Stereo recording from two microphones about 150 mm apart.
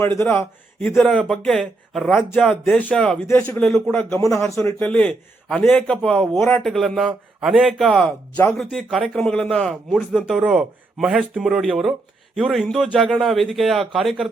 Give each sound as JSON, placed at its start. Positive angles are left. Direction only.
{"t": 0.0, "sound": "a man's voice", "side_deg": 15}
{"t": 3.2, "sound": "a man's voice", "side_deg": 20}
{"t": 4.8, "sound": "a man's voice", "side_deg": 10}